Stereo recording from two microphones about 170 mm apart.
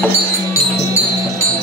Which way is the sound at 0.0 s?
15° left (ahead or behind).